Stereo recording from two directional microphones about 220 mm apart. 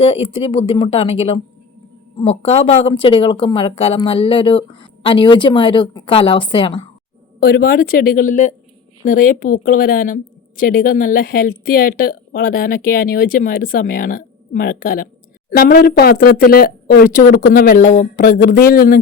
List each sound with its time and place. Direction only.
0.0 s speech: 25° left (ahead or behind)
7.3 s a woman's voice: 45° left (ahead or behind)